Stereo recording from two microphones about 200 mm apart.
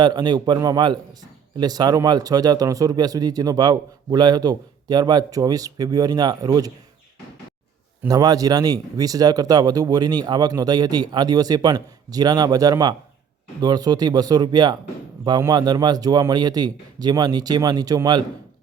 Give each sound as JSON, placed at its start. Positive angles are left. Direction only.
{"t": 0.0, "sound": "speech", "side_deg": -20}
{"t": 8.0, "sound": "speech", "side_deg": -20}